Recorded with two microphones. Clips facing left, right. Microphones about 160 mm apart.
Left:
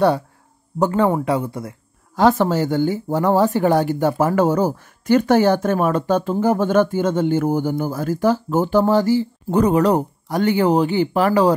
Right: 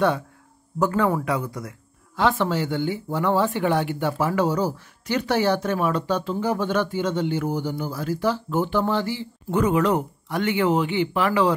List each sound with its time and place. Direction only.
0.7 s speech: 30° left (ahead or behind)
2.1 s speech: 40° left (ahead or behind)